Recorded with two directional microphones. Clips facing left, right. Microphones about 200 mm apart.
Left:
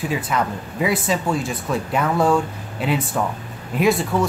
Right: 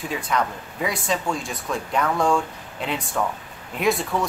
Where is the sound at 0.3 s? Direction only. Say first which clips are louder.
Left 2 dB; 5° left (ahead or behind).